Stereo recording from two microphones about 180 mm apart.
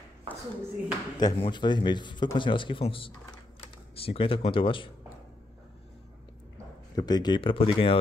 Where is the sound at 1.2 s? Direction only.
25° left (ahead or behind).